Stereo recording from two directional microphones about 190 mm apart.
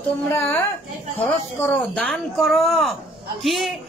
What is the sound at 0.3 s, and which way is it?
A woman's voice, 10° left (ahead or behind).